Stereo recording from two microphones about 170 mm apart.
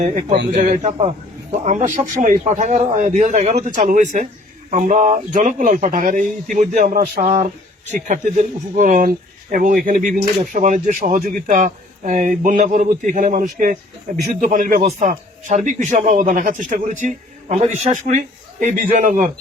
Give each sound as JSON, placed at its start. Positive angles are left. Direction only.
{"t": 0.5, "sound": "speech", "side_deg": -40}